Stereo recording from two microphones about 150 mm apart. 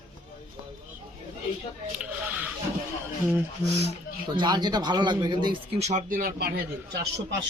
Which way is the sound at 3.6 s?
45° right (ahead or behind).